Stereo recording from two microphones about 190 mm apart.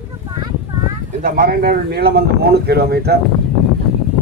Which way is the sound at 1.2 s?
50° right (ahead or behind).